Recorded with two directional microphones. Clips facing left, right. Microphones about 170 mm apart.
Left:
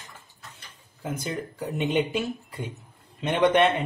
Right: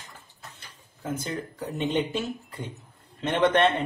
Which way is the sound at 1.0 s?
15° left (ahead or behind).